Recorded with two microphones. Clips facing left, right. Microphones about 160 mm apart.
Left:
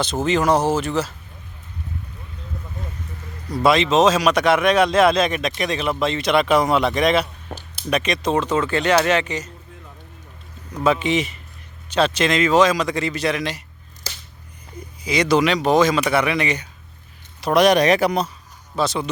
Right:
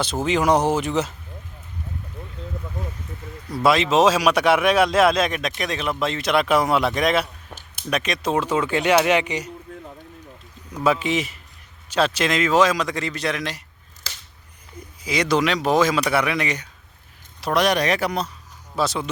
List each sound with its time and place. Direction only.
0.0 s speech: 10° right (ahead or behind)
3.5 s a man's voice: 5° right (ahead or behind)
7.5 s a sound: 50° left (ahead or behind)
7.9 s speech: centre (ahead or behind)
10.7 s a man's voice: 5° right (ahead or behind)
15.0 s a man's voice: centre (ahead or behind)
17.5 s speech: 20° left (ahead or behind)
18.8 s a man's voice: centre (ahead or behind)